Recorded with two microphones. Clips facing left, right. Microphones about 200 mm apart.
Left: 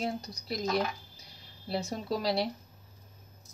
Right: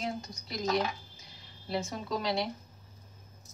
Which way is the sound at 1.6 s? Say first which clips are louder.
Left 1 dB; 35° left (ahead or behind).